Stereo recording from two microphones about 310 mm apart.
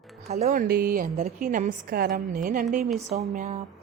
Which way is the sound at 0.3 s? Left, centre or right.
Right.